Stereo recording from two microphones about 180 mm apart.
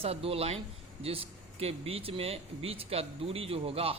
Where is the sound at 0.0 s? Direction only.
30° right (ahead or behind).